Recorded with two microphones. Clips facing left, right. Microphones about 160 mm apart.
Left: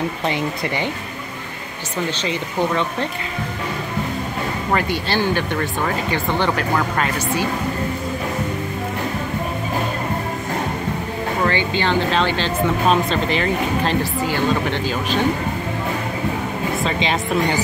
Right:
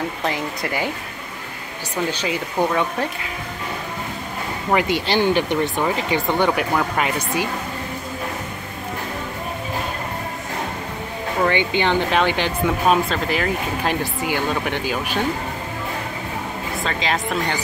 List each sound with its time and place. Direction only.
0.2 s speech: centre (ahead or behind)
2.0 s speech: 10° right (ahead or behind)
4.7 s speech: 20° right (ahead or behind)
11.4 s speech: 15° right (ahead or behind)
16.8 s speech: centre (ahead or behind)